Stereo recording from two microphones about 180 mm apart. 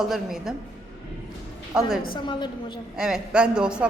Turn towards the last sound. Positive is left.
turn(degrees=-5)  # may be behind; listen again after turning